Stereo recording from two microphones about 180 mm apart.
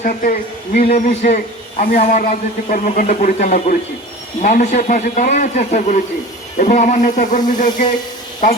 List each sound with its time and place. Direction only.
0.0 s a man's voice: 50° left (ahead or behind)